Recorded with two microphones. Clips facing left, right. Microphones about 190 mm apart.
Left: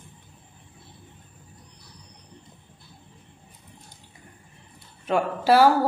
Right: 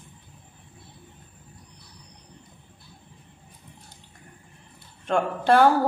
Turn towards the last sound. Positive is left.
turn(degrees=5)  # may be behind; listen again after turning